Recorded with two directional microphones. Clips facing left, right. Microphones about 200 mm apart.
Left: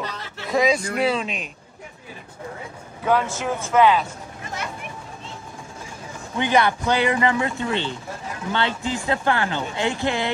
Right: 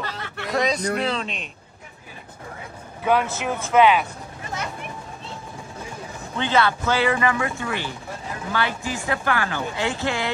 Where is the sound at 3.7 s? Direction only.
20° right (ahead or behind).